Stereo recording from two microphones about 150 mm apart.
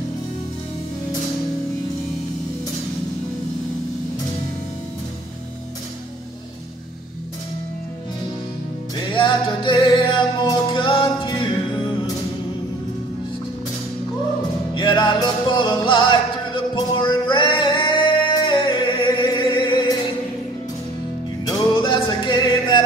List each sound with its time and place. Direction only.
8.9 s music: 30° left (ahead or behind)
14.7 s music: 30° left (ahead or behind)
21.5 s music: 30° left (ahead or behind)